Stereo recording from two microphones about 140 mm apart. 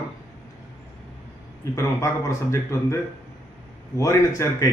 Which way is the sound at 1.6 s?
20° left (ahead or behind).